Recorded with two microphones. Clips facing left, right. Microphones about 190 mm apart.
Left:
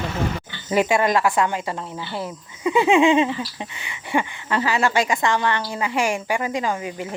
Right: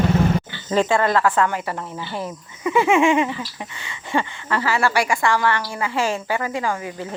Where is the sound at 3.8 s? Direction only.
15° left (ahead or behind).